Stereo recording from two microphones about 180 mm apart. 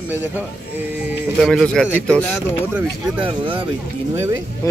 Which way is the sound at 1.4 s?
5° left (ahead or behind).